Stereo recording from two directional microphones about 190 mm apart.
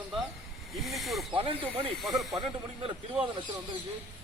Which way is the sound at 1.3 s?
30° right (ahead or behind).